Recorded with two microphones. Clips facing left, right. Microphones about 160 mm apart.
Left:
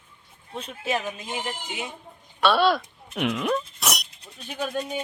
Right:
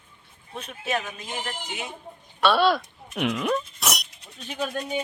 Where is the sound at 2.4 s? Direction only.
Centre (ahead or behind).